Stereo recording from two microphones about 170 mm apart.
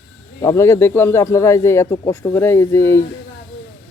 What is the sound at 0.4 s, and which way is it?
Speech, 15° left (ahead or behind).